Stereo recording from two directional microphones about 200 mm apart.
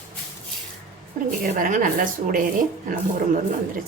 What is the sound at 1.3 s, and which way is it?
Speech, 45° right (ahead or behind).